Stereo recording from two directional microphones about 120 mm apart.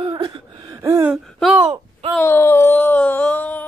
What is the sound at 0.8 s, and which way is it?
Gasp, 25° right (ahead or behind).